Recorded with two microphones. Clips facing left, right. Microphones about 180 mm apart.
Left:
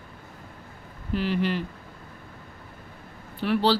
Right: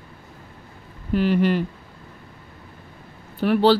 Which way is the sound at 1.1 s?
50° right (ahead or behind).